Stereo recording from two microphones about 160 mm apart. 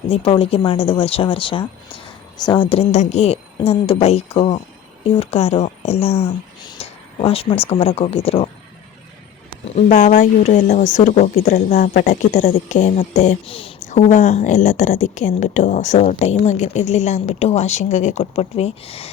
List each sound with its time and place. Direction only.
0.1 s a woman's voice: 35° left (ahead or behind)
9.6 s a woman's voice: 45° left (ahead or behind)
13.8 s a woman's voice: 45° left (ahead or behind)